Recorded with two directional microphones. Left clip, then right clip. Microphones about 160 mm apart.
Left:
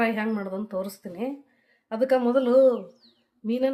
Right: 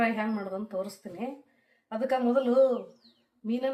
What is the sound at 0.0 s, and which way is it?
Speech, 85° left.